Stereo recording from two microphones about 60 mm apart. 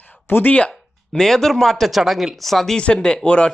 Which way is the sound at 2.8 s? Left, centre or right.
Centre.